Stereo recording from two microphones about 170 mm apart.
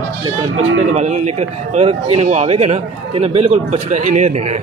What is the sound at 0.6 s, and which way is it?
Speech, 45° right (ahead or behind).